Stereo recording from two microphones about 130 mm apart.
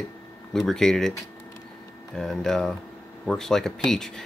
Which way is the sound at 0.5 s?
5° left (ahead or behind).